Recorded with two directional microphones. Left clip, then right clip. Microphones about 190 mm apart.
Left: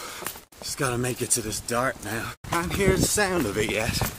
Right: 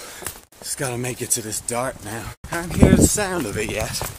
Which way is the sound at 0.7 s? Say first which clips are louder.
Even; centre (ahead or behind).